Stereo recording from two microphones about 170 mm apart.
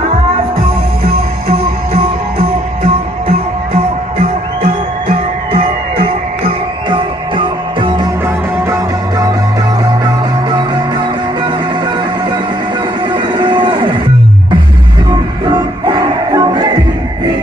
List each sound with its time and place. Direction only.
1.5 s music: 30° right (ahead or behind)
6.9 s music: 30° right (ahead or behind)
13.1 s a sound: 25° right (ahead or behind)
15.5 s music: 25° right (ahead or behind)